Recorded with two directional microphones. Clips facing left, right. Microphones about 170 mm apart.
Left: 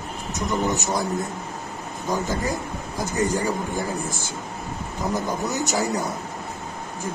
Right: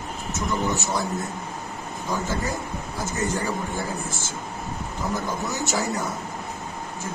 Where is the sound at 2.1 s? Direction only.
15° left (ahead or behind).